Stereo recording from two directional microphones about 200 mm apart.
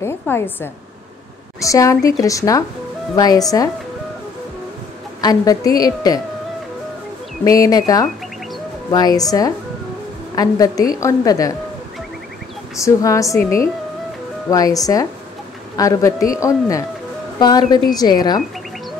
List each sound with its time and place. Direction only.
0.0 s a woman's voice: 10° left (ahead or behind)
5.2 s a woman's voice: 20° left (ahead or behind)
7.4 s a woman's voice: 15° left (ahead or behind)
12.7 s a woman's voice: 15° left (ahead or behind)